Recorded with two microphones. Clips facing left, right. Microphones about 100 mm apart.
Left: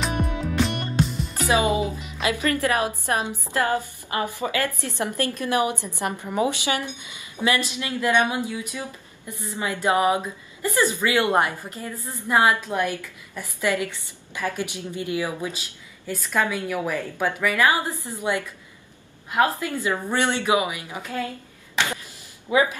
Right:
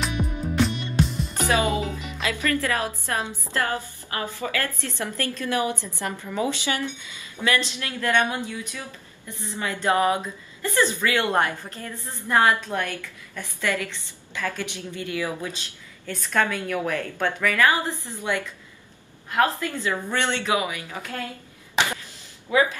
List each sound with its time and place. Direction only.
0.2 s music: 85° left
1.5 s a woman's voice: 20° left (ahead or behind)
21.8 s a sound: 20° right (ahead or behind)
22.5 s speech: 20° left (ahead or behind)